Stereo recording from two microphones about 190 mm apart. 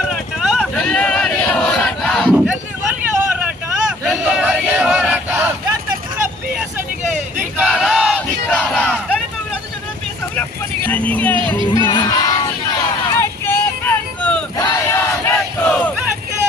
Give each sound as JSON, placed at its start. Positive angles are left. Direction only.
{"t": 0.1, "sound": "a sound", "side_deg": 0}
{"t": 4.0, "sound": "a sound", "side_deg": 0}
{"t": 7.1, "sound": "a sound", "side_deg": -10}
{"t": 7.7, "sound": "battle cry", "side_deg": 0}
{"t": 10.8, "sound": "speech", "side_deg": 10}
{"t": 11.7, "sound": "music", "side_deg": 25}
{"t": 13.1, "sound": "vehicle", "side_deg": 15}
{"t": 14.6, "sound": "battle cry", "side_deg": 15}
{"t": 15.4, "sound": "battle cry", "side_deg": 0}